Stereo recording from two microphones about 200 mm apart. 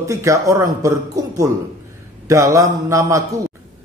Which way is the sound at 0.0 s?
15° right (ahead or behind).